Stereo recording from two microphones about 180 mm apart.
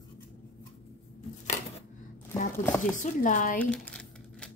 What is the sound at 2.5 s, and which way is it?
Speech, 15° left (ahead or behind).